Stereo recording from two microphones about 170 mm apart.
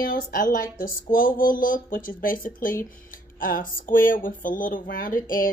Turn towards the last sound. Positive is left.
turn(degrees=55)  # may be behind; listen again after turning